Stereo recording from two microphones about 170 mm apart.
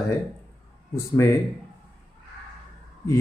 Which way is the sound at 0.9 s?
15° left (ahead or behind).